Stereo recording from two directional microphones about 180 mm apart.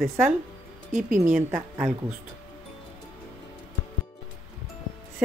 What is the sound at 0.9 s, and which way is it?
Speech, 45° right (ahead or behind).